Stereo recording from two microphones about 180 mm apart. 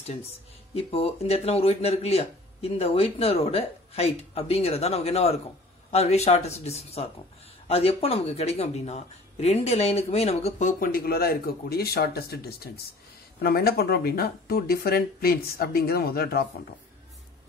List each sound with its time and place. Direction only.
0.0 s speech: 35° left (ahead or behind); by 16.6 s 60° left (ahead or behind)